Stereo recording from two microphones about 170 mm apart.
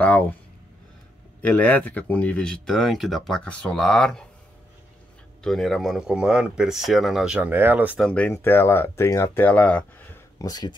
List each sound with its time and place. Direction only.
0.0 s speech: 10° left (ahead or behind)
1.4 s speech: 10° left (ahead or behind)
5.4 s speech: centre (ahead or behind)
8.1 s speech: 10° left (ahead or behind)
10.4 s speech: 25° left (ahead or behind)